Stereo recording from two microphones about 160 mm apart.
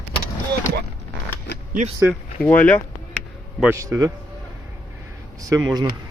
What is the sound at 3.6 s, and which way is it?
Speech, 15° right (ahead or behind).